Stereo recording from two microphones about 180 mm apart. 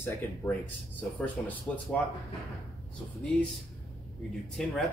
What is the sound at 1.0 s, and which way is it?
Speech, 10° left (ahead or behind).